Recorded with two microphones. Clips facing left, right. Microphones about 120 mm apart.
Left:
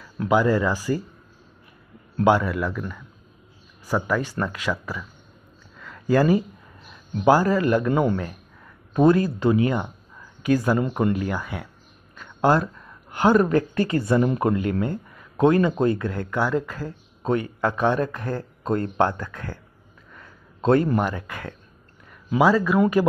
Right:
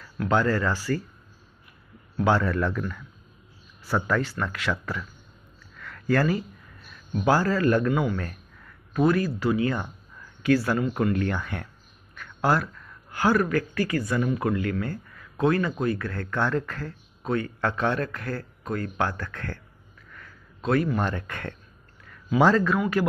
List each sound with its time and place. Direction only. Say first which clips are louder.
0.3 s speech: left 4 dB; 15° left (ahead or behind)
2.2 s speech: left 3 dB; 15° left (ahead or behind)
3.8 s speech: left 2 dB; 15° left (ahead or behind)
5.8 s a sound: left 4 dB; 15° left (ahead or behind)
7.9 s speech: left 4 dB; 40° left (ahead or behind)
8.2 s speech: left 3 dB; 15° left (ahead or behind)
11.1 s speech: even; 10° left (ahead or behind)
20.1 s a sound: left 1 dB; 20° left (ahead or behind)
21.0 s speech: left 2 dB; 10° left (ahead or behind)